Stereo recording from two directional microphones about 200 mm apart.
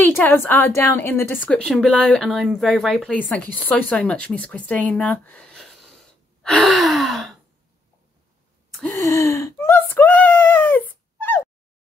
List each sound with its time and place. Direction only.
0.1 s a woman's voice: 10° left (ahead or behind)
6.4 s gasp: centre (ahead or behind)
9.0 s a sound: 15° left (ahead or behind)